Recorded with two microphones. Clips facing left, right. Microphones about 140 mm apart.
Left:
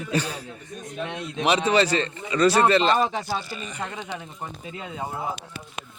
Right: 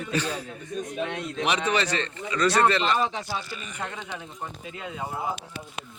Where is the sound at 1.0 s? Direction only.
15° left (ahead or behind).